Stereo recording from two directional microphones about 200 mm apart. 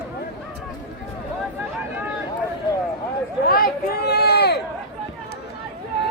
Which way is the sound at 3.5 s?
50° left (ahead or behind).